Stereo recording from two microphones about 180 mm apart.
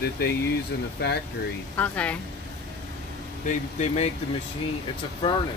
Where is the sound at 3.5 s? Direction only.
40° left (ahead or behind).